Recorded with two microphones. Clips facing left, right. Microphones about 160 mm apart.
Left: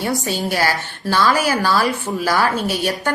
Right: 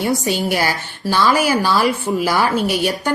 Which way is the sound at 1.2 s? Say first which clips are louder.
Right 2 dB; 20° right (ahead or behind).